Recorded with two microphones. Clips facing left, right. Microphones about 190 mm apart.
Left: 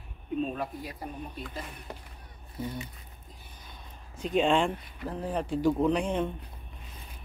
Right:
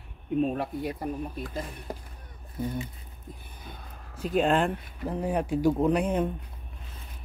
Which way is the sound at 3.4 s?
60° right (ahead or behind).